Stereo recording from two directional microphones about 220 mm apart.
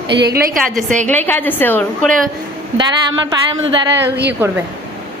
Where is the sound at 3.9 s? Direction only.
50° right (ahead or behind).